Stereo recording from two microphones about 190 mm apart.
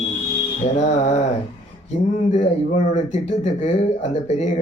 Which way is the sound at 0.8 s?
35° left (ahead or behind).